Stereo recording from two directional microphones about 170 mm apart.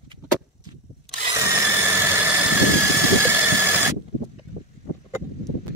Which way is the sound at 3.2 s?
15° right (ahead or behind).